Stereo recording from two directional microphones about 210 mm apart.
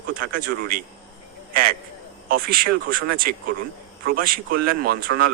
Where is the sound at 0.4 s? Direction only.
45° right (ahead or behind).